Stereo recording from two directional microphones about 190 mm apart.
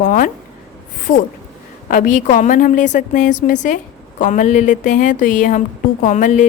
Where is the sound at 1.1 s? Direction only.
90° left.